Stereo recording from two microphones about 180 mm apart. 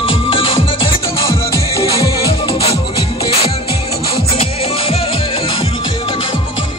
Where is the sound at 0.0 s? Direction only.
30° left (ahead or behind).